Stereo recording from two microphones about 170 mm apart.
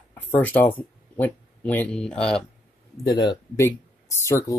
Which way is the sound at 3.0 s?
25° left (ahead or behind).